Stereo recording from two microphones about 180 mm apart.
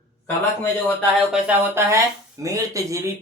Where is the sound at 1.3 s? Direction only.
10° right (ahead or behind).